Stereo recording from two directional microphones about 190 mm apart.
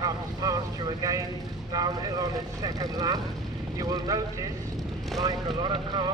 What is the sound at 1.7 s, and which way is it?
Speech, 20° right (ahead or behind).